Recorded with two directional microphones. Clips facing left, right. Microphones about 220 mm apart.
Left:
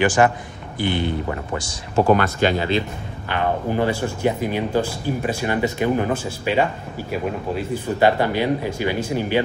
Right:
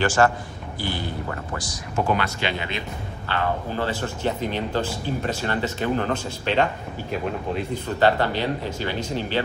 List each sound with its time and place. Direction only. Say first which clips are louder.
0.0 s speech: left 3 dB; 15° left (ahead or behind)
2.0 s speech: left 8 dB; 45° left (ahead or behind)
3.3 s speech: left 4 dB; 15° left (ahead or behind)